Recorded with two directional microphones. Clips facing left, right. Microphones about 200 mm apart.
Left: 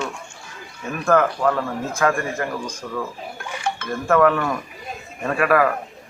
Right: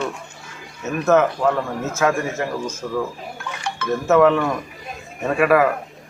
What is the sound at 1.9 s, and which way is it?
A man's voice, 5° right (ahead or behind).